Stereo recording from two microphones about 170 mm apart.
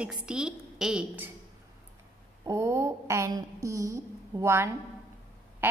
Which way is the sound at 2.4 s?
15° right (ahead or behind).